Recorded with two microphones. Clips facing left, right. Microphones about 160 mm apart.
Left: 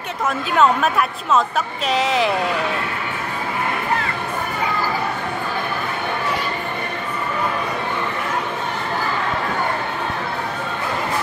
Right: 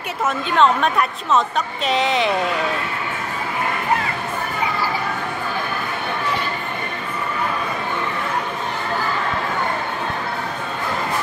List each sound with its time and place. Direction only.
0.6 s a woman's voice: 5° left (ahead or behind)